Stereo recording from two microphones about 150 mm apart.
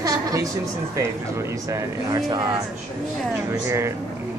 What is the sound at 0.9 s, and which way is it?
Speech, 20° right (ahead or behind).